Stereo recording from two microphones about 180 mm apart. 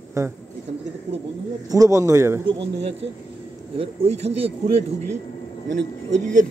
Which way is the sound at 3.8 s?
35° right (ahead or behind).